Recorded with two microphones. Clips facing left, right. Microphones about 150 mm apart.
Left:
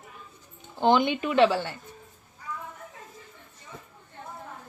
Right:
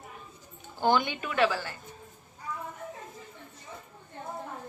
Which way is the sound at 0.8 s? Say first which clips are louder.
Left 4 dB; 20° left (ahead or behind).